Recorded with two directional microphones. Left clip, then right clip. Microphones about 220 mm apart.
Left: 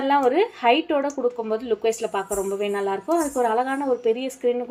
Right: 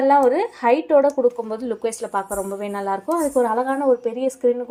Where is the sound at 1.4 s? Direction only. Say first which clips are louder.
Left 2 dB; 30° right (ahead or behind).